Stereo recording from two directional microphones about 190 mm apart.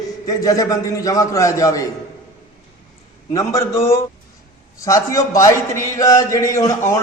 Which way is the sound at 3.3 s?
15° left (ahead or behind).